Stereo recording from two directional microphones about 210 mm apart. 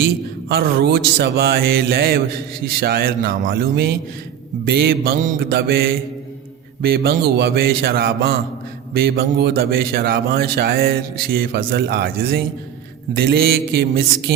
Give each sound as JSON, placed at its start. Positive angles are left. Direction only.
{"t": 0.4, "sound": "a man's voice", "side_deg": -50}